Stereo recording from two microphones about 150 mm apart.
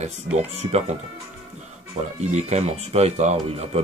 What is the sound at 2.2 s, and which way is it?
Speech, 50° right (ahead or behind).